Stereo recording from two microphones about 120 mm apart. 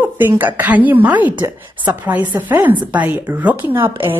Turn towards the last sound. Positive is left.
turn(degrees=-45)  # may be behind; listen again after turning